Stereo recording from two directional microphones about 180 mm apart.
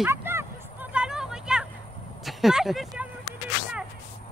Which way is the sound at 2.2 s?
Centre (ahead or behind).